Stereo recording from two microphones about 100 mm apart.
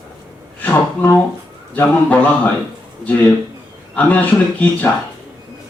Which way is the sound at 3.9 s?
15° left (ahead or behind).